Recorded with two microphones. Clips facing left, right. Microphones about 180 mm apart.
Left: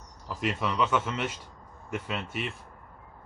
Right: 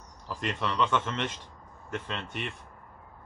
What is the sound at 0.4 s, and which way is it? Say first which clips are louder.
A man's voice: left 1 dB; 5° left (ahead or behind).